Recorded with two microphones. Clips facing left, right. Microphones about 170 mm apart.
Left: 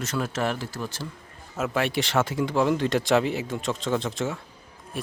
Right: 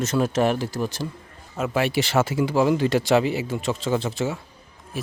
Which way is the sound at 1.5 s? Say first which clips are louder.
Right 3 dB; centre (ahead or behind).